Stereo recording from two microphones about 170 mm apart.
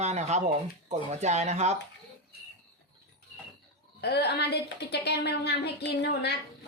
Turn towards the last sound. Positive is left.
turn(degrees=75)  # may be behind; listen again after turning